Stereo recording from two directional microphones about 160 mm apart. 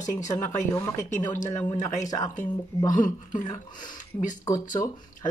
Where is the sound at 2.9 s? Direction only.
55° left (ahead or behind).